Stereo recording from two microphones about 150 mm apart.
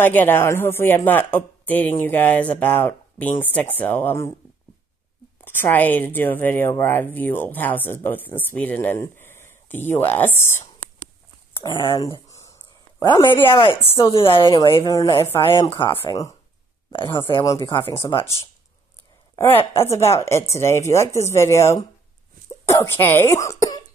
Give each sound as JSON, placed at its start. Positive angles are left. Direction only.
{"t": 0.0, "sound": "speech", "side_deg": 10}
{"t": 5.4, "sound": "speech", "side_deg": 15}
{"t": 11.6, "sound": "speech", "side_deg": 30}
{"t": 16.9, "sound": "speech", "side_deg": 35}
{"t": 19.8, "sound": "speech", "side_deg": 20}